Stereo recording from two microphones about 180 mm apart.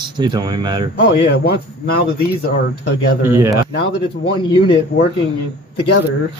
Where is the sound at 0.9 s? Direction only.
70° left (ahead or behind).